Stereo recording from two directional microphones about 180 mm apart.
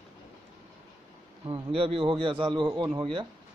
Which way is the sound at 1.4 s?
30° right (ahead or behind).